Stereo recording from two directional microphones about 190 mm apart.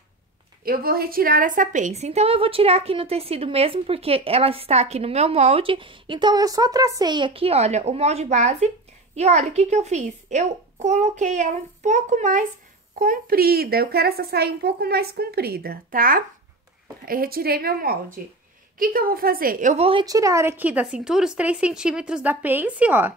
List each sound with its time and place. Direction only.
0.7 s a woman's voice: 50° right (ahead or behind); by 23.1 s 10° right (ahead or behind)